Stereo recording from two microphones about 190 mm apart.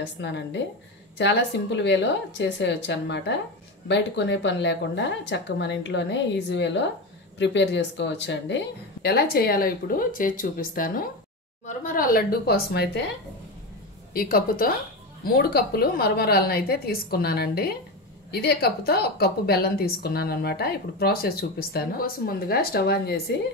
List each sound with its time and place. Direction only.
0.0 s speech: 70° left (ahead or behind)
14.1 s a woman's voice: 50° left (ahead or behind)